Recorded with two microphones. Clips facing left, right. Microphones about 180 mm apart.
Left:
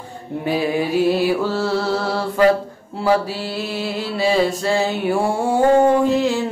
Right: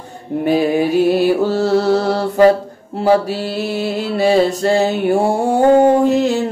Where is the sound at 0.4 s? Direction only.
45° right (ahead or behind).